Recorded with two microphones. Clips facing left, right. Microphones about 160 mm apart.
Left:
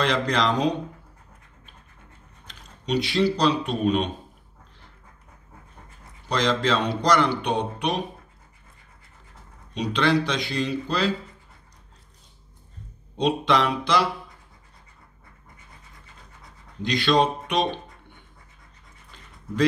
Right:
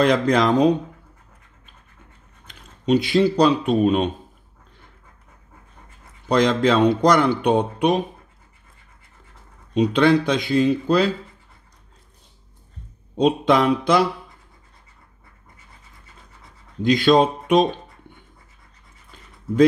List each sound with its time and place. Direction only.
0.0 s speech: 50° right (ahead or behind)
2.4 s speech: 50° right (ahead or behind)
6.2 s speech: 50° right (ahead or behind)
9.8 s speech: 50° right (ahead or behind)
13.2 s speech: 50° right (ahead or behind)
16.8 s speech: 50° right (ahead or behind)